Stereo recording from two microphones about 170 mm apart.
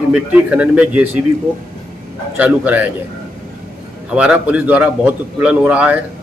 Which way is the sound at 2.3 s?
10° right (ahead or behind).